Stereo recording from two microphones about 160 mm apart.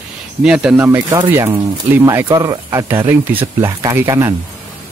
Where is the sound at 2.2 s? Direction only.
25° right (ahead or behind).